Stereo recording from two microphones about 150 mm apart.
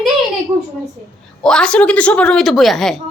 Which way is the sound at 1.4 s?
5° left (ahead or behind).